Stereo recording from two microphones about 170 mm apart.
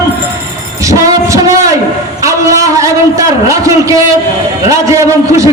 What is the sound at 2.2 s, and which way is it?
A man's voice, 20° right (ahead or behind).